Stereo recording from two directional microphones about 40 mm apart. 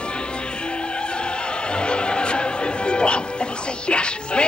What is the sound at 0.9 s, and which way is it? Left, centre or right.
Opera, left.